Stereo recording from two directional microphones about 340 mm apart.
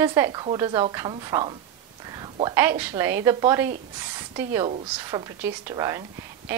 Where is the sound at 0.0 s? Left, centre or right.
Centre.